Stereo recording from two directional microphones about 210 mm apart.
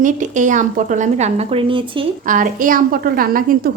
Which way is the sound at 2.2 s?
40° right (ahead or behind).